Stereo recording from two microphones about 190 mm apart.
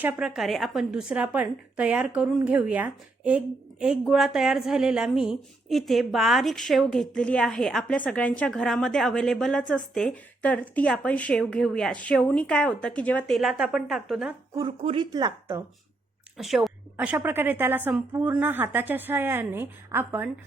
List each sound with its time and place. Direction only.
0.0 s a woman's voice: 5° right (ahead or behind)
14.8 s speech: 35° right (ahead or behind)
15.1 s a woman's voice: 20° right (ahead or behind)
16.4 s a woman's voice: centre (ahead or behind)